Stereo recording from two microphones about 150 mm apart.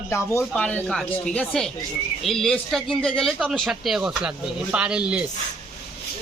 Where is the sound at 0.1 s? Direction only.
15° left (ahead or behind); by 5.2 s 10° right (ahead or behind).